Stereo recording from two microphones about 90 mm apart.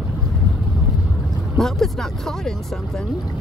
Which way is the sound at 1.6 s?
5° left (ahead or behind).